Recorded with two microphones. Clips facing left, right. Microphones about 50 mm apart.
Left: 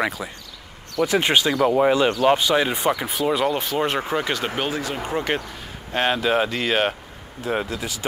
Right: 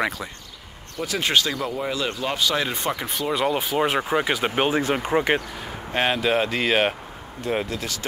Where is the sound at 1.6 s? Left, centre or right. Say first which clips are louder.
Left 9 dB; left.